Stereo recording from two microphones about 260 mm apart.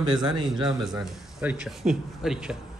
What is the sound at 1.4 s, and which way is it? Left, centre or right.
A man's voice, centre.